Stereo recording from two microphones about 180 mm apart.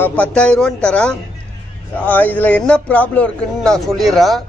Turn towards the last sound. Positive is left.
turn(degrees=0)  # may be behind; listen again after turning